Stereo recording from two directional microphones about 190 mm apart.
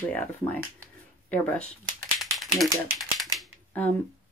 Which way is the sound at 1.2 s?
10° left (ahead or behind).